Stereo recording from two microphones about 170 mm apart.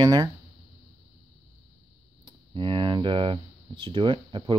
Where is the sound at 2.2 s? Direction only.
30° right (ahead or behind).